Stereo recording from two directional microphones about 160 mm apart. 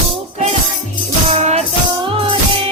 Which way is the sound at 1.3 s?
45° right (ahead or behind).